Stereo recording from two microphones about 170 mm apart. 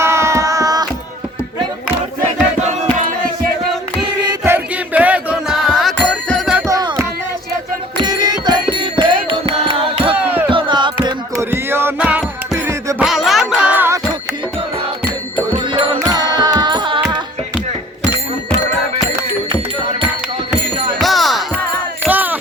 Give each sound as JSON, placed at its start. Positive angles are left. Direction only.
{"t": 0.0, "sound": "child singing", "side_deg": -15}
{"t": 4.4, "sound": "music", "side_deg": -10}
{"t": 6.7, "sound": "music", "side_deg": -20}
{"t": 11.0, "sound": "music", "side_deg": -15}
{"t": 13.1, "sound": "music", "side_deg": 0}
{"t": 16.0, "sound": "music", "side_deg": -20}
{"t": 21.0, "sound": "music", "side_deg": 0}
{"t": 22.0, "sound": "music", "side_deg": -10}